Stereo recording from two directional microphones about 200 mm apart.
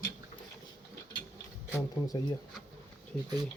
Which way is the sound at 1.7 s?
20° left (ahead or behind).